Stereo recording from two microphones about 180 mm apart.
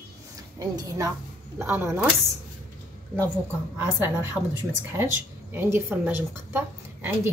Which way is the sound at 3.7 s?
10° right (ahead or behind).